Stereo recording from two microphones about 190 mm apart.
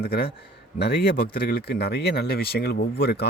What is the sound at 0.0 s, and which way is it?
A man's voice, 55° left (ahead or behind).